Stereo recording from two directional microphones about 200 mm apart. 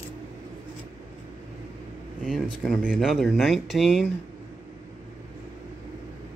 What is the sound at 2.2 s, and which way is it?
Speech, 5° right (ahead or behind).